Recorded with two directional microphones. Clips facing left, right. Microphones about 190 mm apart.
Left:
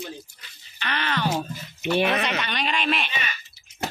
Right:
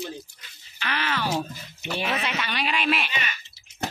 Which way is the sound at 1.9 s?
60° left (ahead or behind).